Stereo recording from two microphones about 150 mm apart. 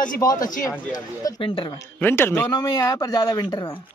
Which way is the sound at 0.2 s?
25° left (ahead or behind).